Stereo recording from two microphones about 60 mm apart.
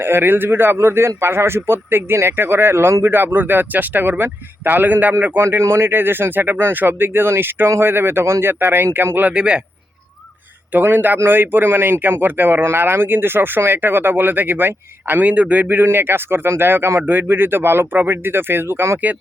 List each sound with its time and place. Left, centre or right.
0.0 s a man's voice: right
9.2 s a man's voice: centre
10.7 s a man's voice: right